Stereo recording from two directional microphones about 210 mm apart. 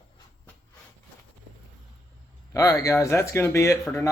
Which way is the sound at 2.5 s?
15° left (ahead or behind).